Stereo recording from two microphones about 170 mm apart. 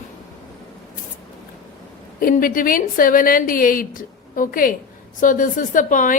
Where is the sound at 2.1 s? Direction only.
55° left (ahead or behind).